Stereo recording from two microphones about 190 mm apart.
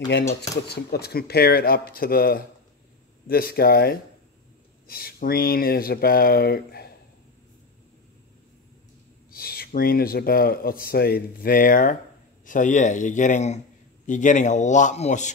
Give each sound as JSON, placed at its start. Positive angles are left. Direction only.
{"t": 0.7, "sound": "speech", "side_deg": 55}
{"t": 9.3, "sound": "a man's voice", "side_deg": 50}